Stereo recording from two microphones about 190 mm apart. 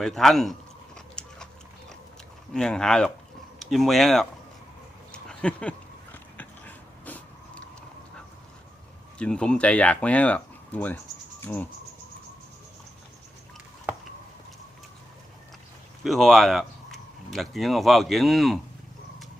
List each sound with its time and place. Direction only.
0.0 s speech: centre (ahead or behind)
0.9 s biting: 5° left (ahead or behind)
2.5 s speech: 5° left (ahead or behind)
5.1 s a sound: 5° left (ahead or behind)
6.3 s dog: 10° left (ahead or behind)
9.1 s speech: 5° left (ahead or behind)
16.0 s speech: centre (ahead or behind)